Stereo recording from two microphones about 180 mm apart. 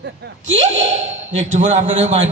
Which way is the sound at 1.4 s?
40° right (ahead or behind).